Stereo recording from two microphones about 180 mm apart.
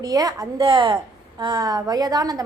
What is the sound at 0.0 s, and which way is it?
A woman's voice, 20° right (ahead or behind).